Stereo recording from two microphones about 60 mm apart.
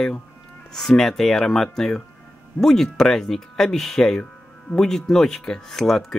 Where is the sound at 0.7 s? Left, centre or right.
Centre.